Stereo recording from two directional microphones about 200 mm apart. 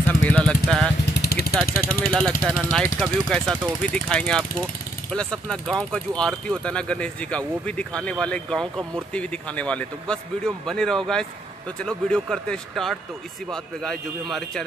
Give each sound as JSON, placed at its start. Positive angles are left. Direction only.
{"t": 0.1, "sound": "vehicle", "side_deg": 5}
{"t": 1.2, "sound": "vehicle", "side_deg": 55}
{"t": 1.8, "sound": "speech", "side_deg": 10}